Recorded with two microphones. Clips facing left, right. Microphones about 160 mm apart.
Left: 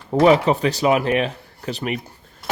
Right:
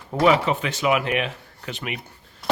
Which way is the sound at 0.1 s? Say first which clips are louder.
Left 4 dB; 35° left (ahead or behind).